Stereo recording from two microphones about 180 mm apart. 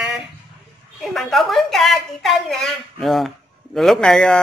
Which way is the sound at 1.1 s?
Centre (ahead or behind).